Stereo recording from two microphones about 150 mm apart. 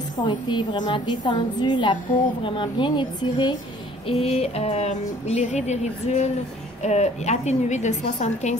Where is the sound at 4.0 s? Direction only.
40° left (ahead or behind).